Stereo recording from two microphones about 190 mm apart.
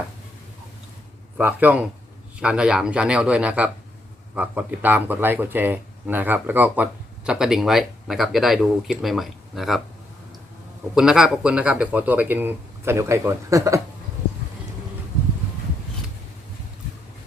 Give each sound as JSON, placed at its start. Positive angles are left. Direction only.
{"t": 1.4, "sound": "speech", "side_deg": -10}
{"t": 10.9, "sound": "speech", "side_deg": -5}